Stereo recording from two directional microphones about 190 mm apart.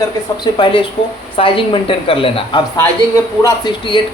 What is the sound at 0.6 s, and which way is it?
A man's voice, 25° left (ahead or behind).